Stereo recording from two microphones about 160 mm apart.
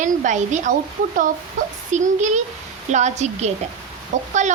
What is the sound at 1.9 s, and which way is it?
Speech, 50° right (ahead or behind).